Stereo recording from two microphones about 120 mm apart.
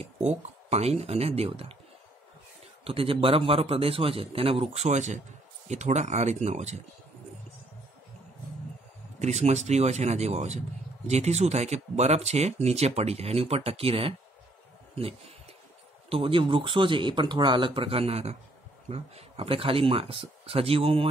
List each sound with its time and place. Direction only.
0.0 s speech: 65° right (ahead or behind)
2.8 s a man's voice: 50° right (ahead or behind); by 6.8 s 70° right (ahead or behind)
9.2 s a man's voice: 70° right (ahead or behind); by 21.1 s 50° right (ahead or behind)